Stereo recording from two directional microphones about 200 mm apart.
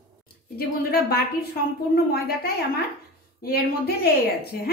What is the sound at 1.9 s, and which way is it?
A woman's voice, 50° left (ahead or behind).